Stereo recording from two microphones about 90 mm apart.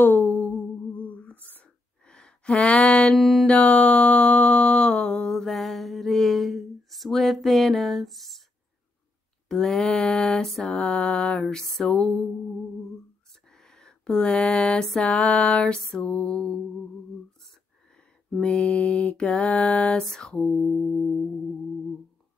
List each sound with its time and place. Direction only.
0.0 s a sound: 20° left (ahead or behind)
3.2 s music: centre (ahead or behind)
3.4 s mantra: 15° left (ahead or behind)
9.5 s mantra: 5° left (ahead or behind)
13.5 s a sound: 5° left (ahead or behind)
15.0 s mantra: 15° left (ahead or behind)
18.4 s mantra: 15° left (ahead or behind)